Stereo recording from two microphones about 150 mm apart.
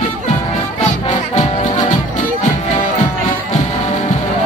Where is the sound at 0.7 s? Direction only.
55° left (ahead or behind).